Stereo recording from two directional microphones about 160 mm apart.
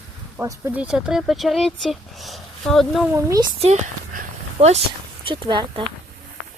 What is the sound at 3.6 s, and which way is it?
Speech, 45° right (ahead or behind).